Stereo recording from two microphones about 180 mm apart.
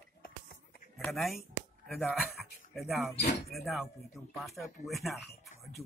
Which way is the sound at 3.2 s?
70° left (ahead or behind).